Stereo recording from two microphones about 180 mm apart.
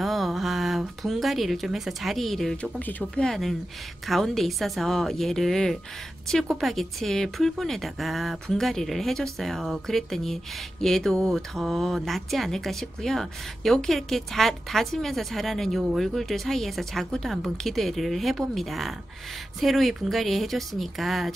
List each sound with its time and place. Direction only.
0.0 s speech: centre (ahead or behind)